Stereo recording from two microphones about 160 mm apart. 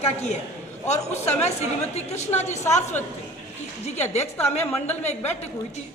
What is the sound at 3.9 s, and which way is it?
Speech, 45° left (ahead or behind).